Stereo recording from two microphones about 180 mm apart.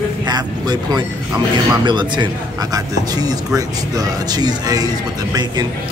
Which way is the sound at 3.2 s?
20° right (ahead or behind).